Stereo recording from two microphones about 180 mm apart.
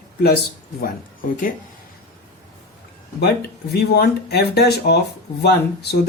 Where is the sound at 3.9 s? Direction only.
60° left (ahead or behind).